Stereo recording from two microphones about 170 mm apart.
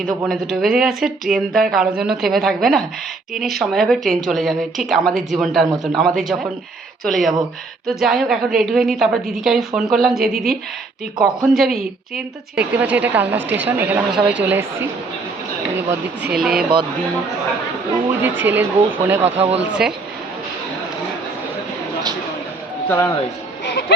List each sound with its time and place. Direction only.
0.0 s a woman's voice: centre (ahead or behind)
15.9 s speech: 5° right (ahead or behind)
18.2 s a woman's voice: 10° right (ahead or behind)
19.2 s speech: 35° right (ahead or behind)
19.8 s speech: 5° right (ahead or behind)
22.9 s a man's voice: 15° left (ahead or behind)